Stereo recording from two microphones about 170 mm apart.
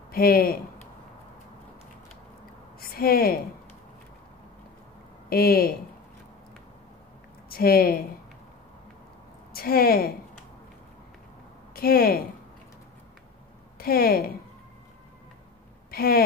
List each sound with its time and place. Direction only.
0.1 s a woman's voice: 60° left (ahead or behind)
2.8 s speech: 60° left (ahead or behind)
5.3 s a woman's voice: 60° left (ahead or behind)
7.4 s speech: 60° left (ahead or behind)
9.5 s a woman's voice: 60° left (ahead or behind)
11.7 s speech: 60° left (ahead or behind)
13.7 s speech: 65° left (ahead or behind)
15.9 s speech: 65° left (ahead or behind)